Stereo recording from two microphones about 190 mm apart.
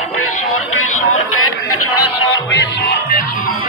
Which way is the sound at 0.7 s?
90° left.